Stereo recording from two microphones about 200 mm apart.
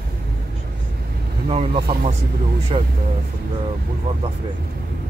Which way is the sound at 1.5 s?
30° right (ahead or behind).